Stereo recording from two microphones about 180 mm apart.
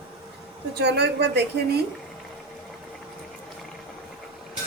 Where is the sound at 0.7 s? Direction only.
65° right (ahead or behind).